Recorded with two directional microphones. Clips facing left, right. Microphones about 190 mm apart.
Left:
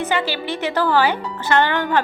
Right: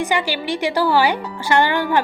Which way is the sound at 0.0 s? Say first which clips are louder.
Right 1 dB; 15° right (ahead or behind).